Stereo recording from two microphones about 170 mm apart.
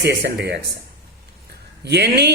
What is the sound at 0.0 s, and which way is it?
Speech, 70° right (ahead or behind).